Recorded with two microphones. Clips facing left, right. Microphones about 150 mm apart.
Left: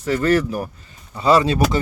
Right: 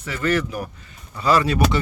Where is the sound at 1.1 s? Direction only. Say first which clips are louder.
Left 3 dB; 25° left (ahead or behind).